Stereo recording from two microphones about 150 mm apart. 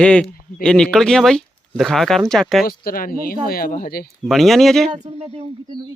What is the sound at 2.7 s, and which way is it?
Speech, 75° left (ahead or behind).